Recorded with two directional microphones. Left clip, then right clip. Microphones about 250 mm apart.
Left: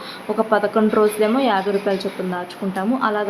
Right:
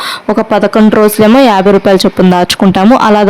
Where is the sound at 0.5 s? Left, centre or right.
Right.